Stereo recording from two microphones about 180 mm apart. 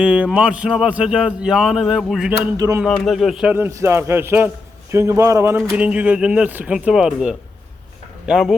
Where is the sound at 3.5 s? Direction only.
15° right (ahead or behind).